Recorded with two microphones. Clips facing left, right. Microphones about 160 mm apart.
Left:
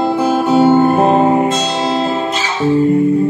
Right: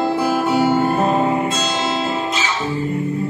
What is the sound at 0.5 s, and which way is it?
Music, 25° left (ahead or behind).